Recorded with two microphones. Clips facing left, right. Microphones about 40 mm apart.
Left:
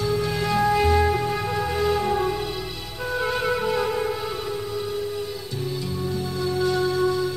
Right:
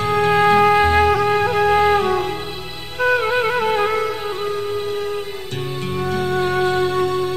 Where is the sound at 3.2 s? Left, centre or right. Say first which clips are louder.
Right 5 dB; right.